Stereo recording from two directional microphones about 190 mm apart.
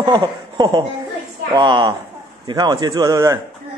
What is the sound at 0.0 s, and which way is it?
Speech, 25° right (ahead or behind).